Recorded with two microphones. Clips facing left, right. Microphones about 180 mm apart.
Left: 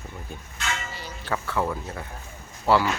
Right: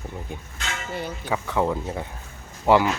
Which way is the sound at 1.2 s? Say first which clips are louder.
Right 2 dB; 15° right (ahead or behind).